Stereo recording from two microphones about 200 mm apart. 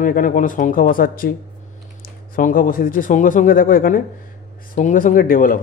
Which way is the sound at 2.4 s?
45° left (ahead or behind).